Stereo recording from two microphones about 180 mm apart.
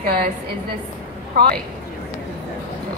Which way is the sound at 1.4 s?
60° right (ahead or behind).